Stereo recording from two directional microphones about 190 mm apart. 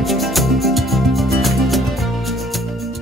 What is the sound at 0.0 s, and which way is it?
Music, centre (ahead or behind).